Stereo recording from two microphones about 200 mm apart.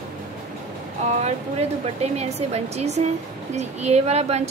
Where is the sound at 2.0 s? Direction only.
30° right (ahead or behind).